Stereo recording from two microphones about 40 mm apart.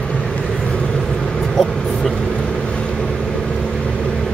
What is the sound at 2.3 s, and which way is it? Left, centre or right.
Vehicle, left.